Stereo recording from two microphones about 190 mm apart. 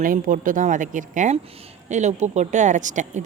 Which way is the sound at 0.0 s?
45° right (ahead or behind).